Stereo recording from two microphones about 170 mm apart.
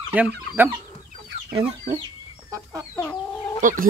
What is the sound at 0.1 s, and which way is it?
Speech, 10° right (ahead or behind).